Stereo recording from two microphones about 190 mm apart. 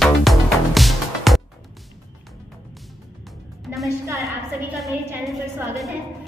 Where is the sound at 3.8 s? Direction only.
15° right (ahead or behind).